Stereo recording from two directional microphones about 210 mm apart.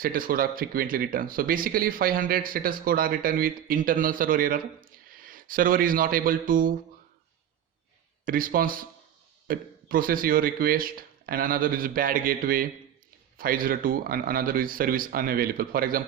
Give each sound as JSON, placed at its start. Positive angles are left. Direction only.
{"t": 0.0, "sound": "speech", "side_deg": -45}
{"t": 8.2, "sound": "speech", "side_deg": -40}